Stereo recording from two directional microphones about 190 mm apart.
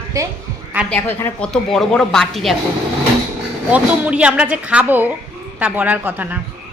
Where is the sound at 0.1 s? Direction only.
15° right (ahead or behind).